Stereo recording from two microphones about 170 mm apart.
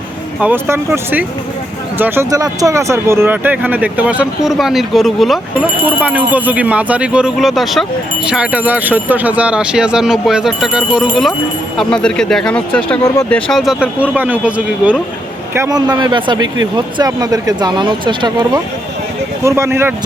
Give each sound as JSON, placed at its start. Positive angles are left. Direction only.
{"t": 0.3, "sound": "speech", "side_deg": -10}
{"t": 15.5, "sound": "speech", "side_deg": -20}
{"t": 19.5, "sound": "speech", "side_deg": -15}